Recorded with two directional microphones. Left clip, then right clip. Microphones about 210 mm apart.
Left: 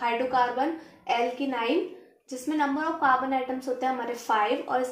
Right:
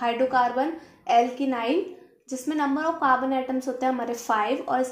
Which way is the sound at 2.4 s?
45° right (ahead or behind).